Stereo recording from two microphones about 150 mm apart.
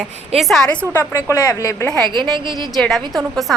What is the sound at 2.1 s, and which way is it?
Speech, 30° right (ahead or behind).